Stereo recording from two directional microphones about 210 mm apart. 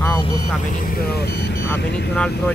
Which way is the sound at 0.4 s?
40° left (ahead or behind).